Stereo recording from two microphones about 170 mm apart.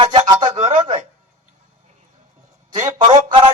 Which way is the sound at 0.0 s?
35° right (ahead or behind).